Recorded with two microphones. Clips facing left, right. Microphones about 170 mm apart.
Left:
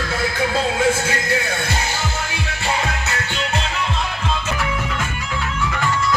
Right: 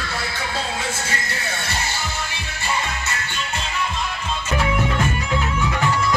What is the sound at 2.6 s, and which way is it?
Music, 80° left.